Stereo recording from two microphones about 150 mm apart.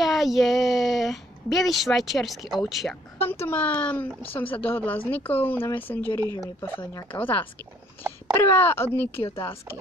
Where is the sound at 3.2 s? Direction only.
15° left (ahead or behind).